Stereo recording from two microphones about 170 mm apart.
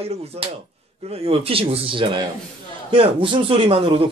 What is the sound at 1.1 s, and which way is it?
Speech, 35° right (ahead or behind).